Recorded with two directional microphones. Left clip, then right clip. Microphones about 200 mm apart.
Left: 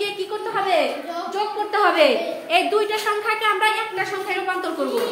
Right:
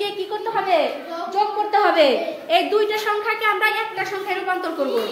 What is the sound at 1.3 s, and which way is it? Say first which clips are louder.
A woman's voice: right 4 dB; 10° right (ahead or behind).